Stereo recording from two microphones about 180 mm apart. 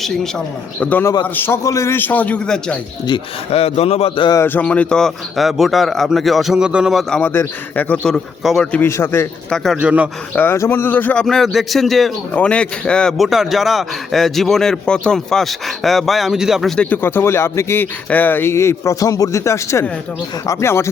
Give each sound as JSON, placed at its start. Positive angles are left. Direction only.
{"t": 0.0, "sound": "a man's voice", "side_deg": 5}
{"t": 3.1, "sound": "speech", "side_deg": 35}
{"t": 4.4, "sound": "a man's voice", "side_deg": 10}
{"t": 9.5, "sound": "speech", "side_deg": -5}
{"t": 10.3, "sound": "a man's voice", "side_deg": 15}